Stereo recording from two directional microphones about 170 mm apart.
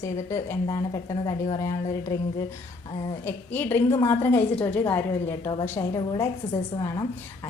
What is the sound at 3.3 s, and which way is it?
A woman's voice, 10° left (ahead or behind).